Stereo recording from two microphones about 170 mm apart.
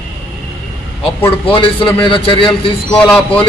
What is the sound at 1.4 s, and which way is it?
A man's voice, 30° left (ahead or behind).